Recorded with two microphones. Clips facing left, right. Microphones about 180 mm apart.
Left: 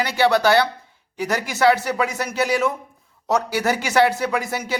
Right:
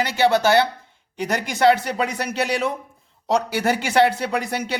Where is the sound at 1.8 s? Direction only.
60° right (ahead or behind).